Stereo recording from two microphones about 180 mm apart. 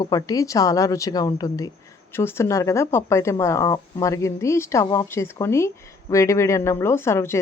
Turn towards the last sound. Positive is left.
turn(degrees=15)  # may be behind; listen again after turning